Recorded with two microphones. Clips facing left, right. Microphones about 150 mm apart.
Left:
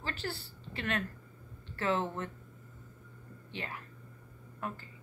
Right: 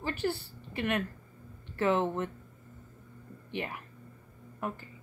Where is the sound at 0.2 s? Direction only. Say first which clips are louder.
Right 8 dB; 15° right (ahead or behind).